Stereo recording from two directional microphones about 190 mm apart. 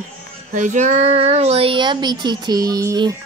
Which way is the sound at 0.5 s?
40° right (ahead or behind).